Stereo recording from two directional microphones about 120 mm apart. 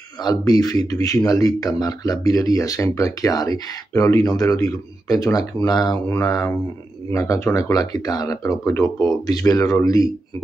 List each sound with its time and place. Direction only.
0.2 s speech: 30° left (ahead or behind)
7.7 s speech: 30° left (ahead or behind)